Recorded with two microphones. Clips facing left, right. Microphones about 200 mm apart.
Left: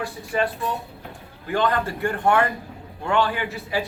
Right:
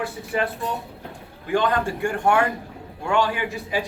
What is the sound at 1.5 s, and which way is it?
A man's voice, 15° right (ahead or behind).